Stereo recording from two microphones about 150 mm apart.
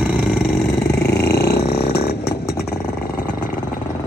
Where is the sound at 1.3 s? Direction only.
90° left.